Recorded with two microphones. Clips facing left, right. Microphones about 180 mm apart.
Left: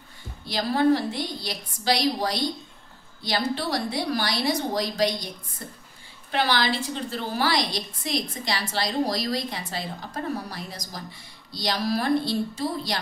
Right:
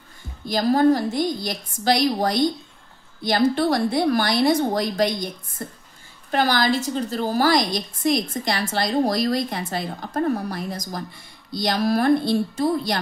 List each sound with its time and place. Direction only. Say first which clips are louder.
0.5 s a woman's voice: right 4 dB; 45° right (ahead or behind)